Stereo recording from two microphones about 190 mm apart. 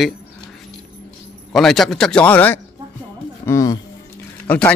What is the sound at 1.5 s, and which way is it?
A man's voice, centre (ahead or behind).